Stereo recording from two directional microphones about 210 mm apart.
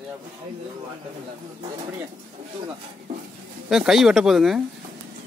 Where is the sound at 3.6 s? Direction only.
5° right (ahead or behind).